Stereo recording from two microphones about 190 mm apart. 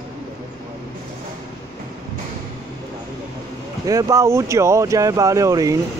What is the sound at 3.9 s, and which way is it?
Speech, 15° right (ahead or behind).